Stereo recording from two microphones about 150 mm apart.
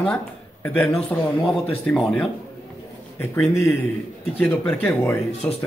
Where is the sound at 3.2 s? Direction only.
15° left (ahead or behind).